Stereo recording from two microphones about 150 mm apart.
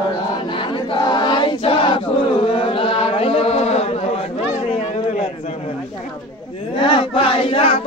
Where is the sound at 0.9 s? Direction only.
30° left (ahead or behind).